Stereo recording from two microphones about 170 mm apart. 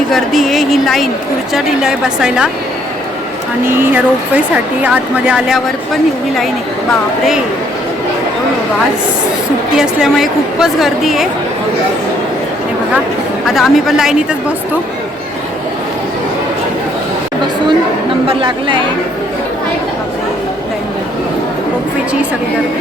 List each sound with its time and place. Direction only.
0.1 s a woman's voice: centre (ahead or behind)
3.7 s speech: 15° right (ahead or behind)
9.7 s a woman's voice: 5° right (ahead or behind)
13.5 s a woman's voice: centre (ahead or behind)
18.3 s a woman's voice: 30° right (ahead or behind)